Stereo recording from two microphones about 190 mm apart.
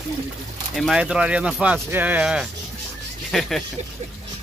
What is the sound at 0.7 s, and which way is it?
Speech, centre (ahead or behind).